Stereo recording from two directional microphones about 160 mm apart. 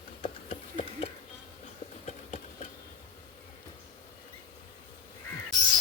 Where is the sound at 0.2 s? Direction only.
35° left (ahead or behind).